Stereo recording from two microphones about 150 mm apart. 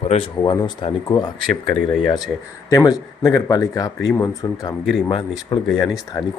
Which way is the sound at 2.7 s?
25° left (ahead or behind).